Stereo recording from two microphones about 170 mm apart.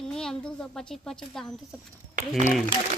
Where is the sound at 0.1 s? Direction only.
5° left (ahead or behind).